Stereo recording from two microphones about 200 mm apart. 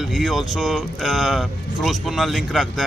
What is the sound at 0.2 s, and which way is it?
A man's voice, centre (ahead or behind).